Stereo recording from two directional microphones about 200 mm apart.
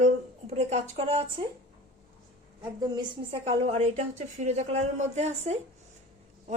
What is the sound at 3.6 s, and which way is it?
A woman's voice, 35° right (ahead or behind).